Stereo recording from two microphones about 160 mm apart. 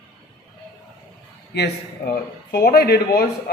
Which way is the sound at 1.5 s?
85° left.